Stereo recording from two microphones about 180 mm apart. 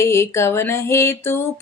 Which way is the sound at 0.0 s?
15° left (ahead or behind).